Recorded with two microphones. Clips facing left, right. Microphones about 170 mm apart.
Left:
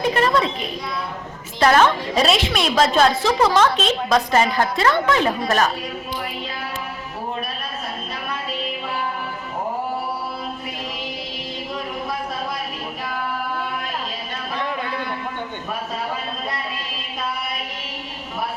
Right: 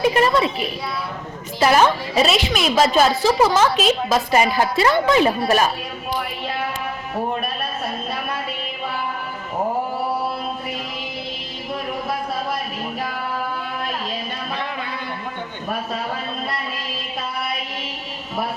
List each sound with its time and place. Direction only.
0.0 s a woman's voice: 5° right (ahead or behind)